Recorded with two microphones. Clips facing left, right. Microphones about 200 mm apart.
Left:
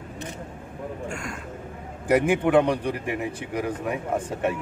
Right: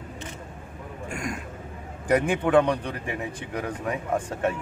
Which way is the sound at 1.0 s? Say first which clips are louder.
Right 1 dB; 15° right (ahead or behind).